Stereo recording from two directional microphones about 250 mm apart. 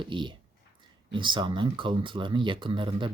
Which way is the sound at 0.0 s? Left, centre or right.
Centre.